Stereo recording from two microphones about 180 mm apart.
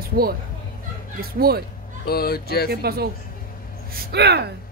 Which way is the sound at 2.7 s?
60° right (ahead or behind).